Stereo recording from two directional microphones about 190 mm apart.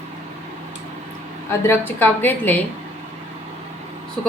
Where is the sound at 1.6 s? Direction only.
10° left (ahead or behind).